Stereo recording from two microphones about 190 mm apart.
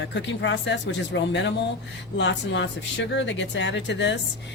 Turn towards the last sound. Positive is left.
turn(degrees=70)  # may be behind; listen again after turning